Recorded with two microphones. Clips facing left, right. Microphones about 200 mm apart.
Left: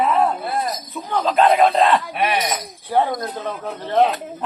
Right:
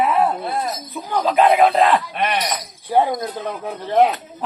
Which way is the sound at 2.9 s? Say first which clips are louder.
Right 2 dB; 20° right (ahead or behind).